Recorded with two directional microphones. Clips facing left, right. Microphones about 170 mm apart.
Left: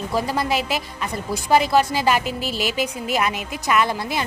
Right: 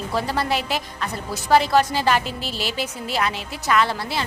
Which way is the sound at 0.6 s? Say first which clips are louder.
Left 1 dB; 40° right (ahead or behind).